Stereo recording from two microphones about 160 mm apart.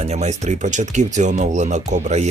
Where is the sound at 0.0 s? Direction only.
45° right (ahead or behind).